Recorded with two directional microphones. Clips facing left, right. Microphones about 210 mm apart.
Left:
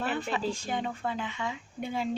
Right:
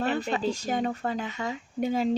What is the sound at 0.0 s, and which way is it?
Speech, 40° right (ahead or behind).